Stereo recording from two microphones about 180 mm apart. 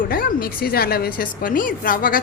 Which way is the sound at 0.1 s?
55° left (ahead or behind).